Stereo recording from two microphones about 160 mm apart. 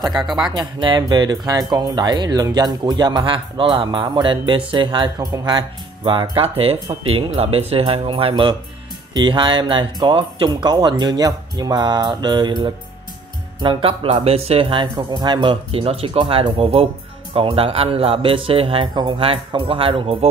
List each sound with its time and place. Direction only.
0.1 s speech: centre (ahead or behind)
0.6 s a man's voice: 30° right (ahead or behind)